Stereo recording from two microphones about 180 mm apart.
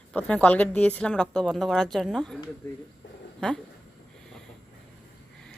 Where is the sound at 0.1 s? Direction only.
5° left (ahead or behind).